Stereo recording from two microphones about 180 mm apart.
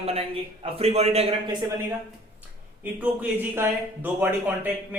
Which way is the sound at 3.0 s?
10° right (ahead or behind).